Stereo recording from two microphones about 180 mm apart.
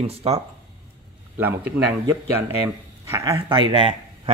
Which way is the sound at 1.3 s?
10° right (ahead or behind).